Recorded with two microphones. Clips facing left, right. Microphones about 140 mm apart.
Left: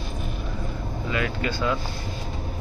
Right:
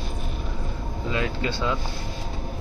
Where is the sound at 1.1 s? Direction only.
25° right (ahead or behind).